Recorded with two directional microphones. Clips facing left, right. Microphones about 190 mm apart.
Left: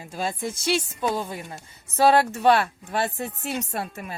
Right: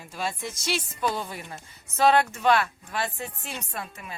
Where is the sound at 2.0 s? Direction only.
35° left (ahead or behind).